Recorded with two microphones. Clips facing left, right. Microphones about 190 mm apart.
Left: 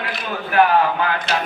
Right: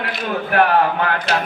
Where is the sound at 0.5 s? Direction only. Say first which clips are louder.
Even; 60° right (ahead or behind).